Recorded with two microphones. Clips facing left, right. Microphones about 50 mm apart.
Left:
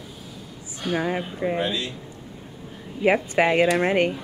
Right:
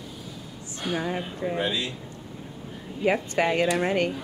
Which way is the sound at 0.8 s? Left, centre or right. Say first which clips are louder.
Left 3 dB; centre.